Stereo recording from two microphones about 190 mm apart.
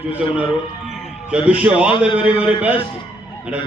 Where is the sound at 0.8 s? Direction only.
Centre (ahead or behind).